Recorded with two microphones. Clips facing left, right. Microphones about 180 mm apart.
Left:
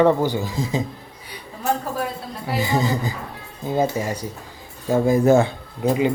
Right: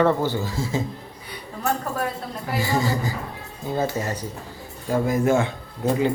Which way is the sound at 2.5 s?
20° left (ahead or behind).